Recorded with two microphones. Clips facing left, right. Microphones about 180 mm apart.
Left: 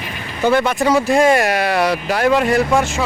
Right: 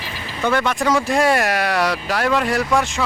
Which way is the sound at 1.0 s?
Centre (ahead or behind).